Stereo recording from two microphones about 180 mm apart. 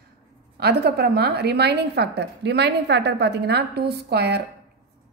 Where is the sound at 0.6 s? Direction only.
65° right (ahead or behind).